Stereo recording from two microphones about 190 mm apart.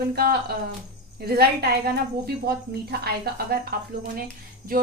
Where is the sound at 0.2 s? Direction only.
55° right (ahead or behind).